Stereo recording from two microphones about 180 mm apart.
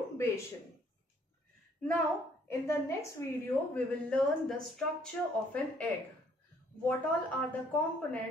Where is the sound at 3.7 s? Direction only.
5° left (ahead or behind).